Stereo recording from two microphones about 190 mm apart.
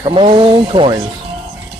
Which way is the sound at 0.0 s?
25° right (ahead or behind).